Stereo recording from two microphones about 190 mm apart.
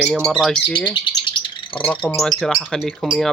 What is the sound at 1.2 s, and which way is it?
Bird, 25° left (ahead or behind).